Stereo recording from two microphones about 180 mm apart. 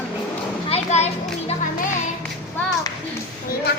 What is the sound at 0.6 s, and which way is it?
Children playing, 35° left (ahead or behind).